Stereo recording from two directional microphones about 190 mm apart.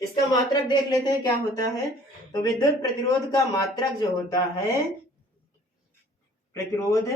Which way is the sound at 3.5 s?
20° left (ahead or behind).